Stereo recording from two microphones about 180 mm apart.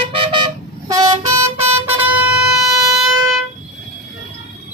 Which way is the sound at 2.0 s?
10° right (ahead or behind).